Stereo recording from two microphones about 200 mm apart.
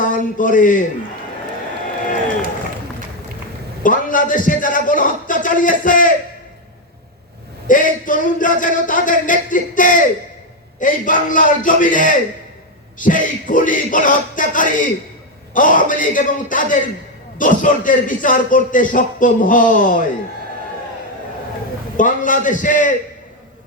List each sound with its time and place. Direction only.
0.0 s speech: 40° left (ahead or behind)
3.8 s a man's voice: 40° left (ahead or behind)
7.7 s a man's voice: 40° left (ahead or behind)
21.9 s a man's voice: 40° left (ahead or behind)